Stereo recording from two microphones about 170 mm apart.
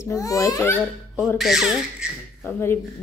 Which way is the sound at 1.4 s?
Centre (ahead or behind).